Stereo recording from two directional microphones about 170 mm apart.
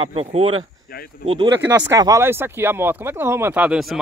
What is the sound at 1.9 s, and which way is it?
Speech, 20° right (ahead or behind).